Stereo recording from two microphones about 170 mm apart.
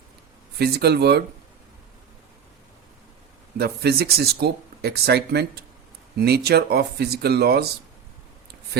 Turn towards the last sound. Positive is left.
turn(degrees=-70)  # may be behind; listen again after turning